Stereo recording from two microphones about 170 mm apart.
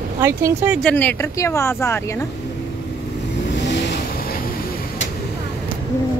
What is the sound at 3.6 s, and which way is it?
Vehicle, 90° left.